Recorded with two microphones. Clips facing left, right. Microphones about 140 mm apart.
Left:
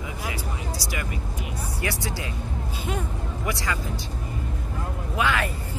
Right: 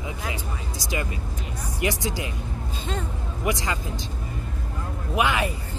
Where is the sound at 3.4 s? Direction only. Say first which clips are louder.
Right 3 dB; 20° right (ahead or behind).